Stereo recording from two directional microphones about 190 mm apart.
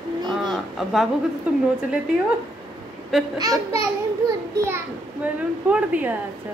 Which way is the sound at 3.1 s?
Centre (ahead or behind).